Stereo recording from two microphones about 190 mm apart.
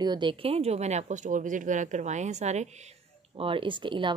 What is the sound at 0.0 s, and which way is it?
Speech, 25° right (ahead or behind).